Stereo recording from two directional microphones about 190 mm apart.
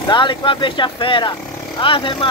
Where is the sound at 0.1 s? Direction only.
25° left (ahead or behind).